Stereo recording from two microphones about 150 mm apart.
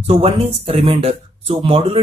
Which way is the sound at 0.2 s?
40° right (ahead or behind).